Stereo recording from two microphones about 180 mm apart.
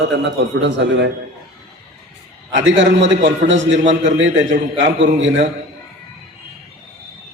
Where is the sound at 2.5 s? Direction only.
90° right.